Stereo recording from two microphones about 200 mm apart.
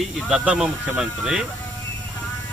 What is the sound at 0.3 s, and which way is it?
A man's voice, 5° right (ahead or behind).